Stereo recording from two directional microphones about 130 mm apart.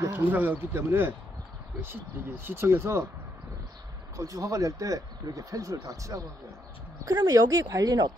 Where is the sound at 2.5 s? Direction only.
20° right (ahead or behind).